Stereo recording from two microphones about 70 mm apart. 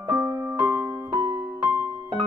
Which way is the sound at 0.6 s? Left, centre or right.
Centre.